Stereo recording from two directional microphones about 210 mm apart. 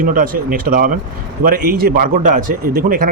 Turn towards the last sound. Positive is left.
turn(degrees=-45)  # may be behind; listen again after turning